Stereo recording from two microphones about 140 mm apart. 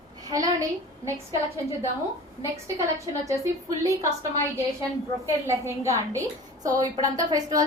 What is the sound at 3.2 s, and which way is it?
A woman's voice, 20° right (ahead or behind).